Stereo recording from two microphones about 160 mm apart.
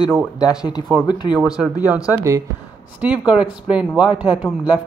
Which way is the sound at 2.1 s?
20° right (ahead or behind).